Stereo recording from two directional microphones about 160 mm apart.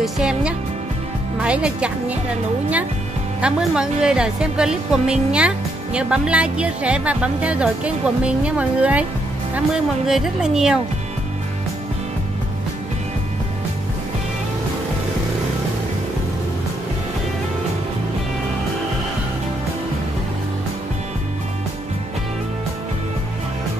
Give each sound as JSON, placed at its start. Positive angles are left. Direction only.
{"t": 0.0, "sound": "music", "side_deg": -5}
{"t": 1.4, "sound": "speech", "side_deg": -5}
{"t": 3.3, "sound": "a woman's voice", "side_deg": -5}
{"t": 10.0, "sound": "a woman's voice", "side_deg": 0}